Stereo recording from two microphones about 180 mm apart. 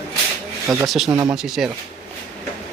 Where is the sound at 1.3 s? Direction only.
Centre (ahead or behind).